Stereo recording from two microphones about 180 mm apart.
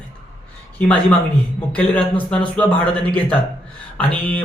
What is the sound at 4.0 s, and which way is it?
Speech, 5° left (ahead or behind).